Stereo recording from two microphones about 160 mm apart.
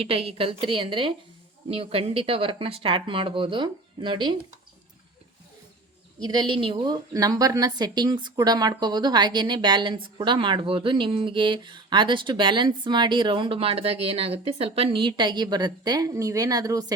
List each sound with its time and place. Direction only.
0.0 s speech: 35° right (ahead or behind)
6.2 s a woman's voice: 25° right (ahead or behind)